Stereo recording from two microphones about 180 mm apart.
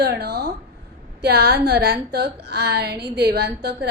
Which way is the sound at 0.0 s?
60° right (ahead or behind).